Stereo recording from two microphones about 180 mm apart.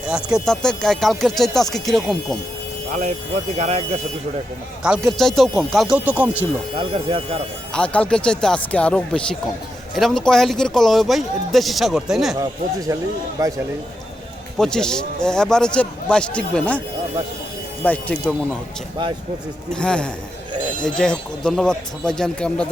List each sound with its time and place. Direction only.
0.1 s speech: 5° right (ahead or behind)
3.6 s speech: 35° right (ahead or behind)
4.8 s speech: centre (ahead or behind)
7.7 s speech: 5° left (ahead or behind)
12.9 s speech: 20° right (ahead or behind)
14.6 s speech: 5° left (ahead or behind)
17.8 s speech: 5° left (ahead or behind)
19.7 s speech: 5° left (ahead or behind)
20.5 s a sound: 25° right (ahead or behind)
20.8 s speech: 5° left (ahead or behind)